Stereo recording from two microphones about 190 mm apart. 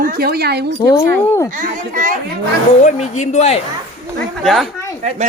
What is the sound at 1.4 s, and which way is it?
Speech, 40° right (ahead or behind).